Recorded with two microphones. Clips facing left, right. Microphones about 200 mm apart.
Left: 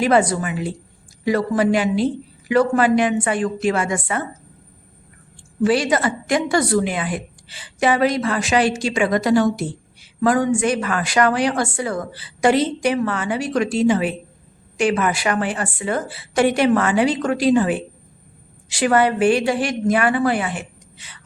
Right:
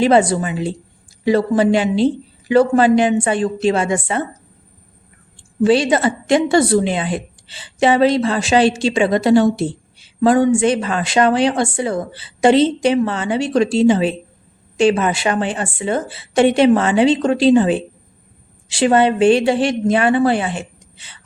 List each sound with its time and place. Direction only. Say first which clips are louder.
0.0 s a woman's voice: right 3 dB; 25° right (ahead or behind)
5.6 s a woman's voice: right 4 dB; 25° right (ahead or behind)